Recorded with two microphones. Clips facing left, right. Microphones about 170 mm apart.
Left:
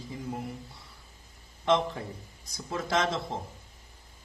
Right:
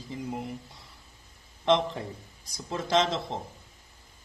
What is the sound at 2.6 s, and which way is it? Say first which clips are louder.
Speech: right 3 dB; 20° right (ahead or behind).